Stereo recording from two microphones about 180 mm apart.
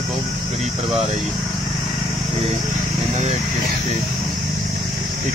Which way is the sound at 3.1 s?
40° right (ahead or behind).